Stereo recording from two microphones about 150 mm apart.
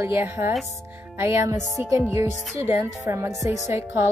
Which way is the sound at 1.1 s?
15° right (ahead or behind).